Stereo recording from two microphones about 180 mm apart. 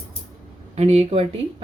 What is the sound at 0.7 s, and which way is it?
Speech, 35° right (ahead or behind).